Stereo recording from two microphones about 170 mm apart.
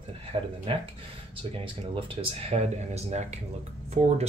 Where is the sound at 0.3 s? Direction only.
35° right (ahead or behind).